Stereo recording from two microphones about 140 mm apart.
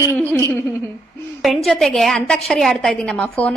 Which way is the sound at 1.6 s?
Centre (ahead or behind).